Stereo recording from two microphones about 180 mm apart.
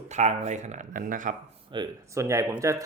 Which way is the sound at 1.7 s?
20° right (ahead or behind).